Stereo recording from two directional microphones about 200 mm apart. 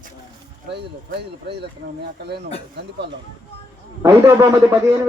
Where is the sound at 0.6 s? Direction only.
55° right (ahead or behind).